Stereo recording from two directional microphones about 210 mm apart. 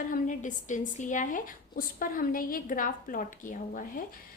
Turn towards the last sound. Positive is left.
turn(degrees=40)  # may be behind; listen again after turning